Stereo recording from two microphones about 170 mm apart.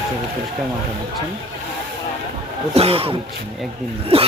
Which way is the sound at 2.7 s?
35° right (ahead or behind).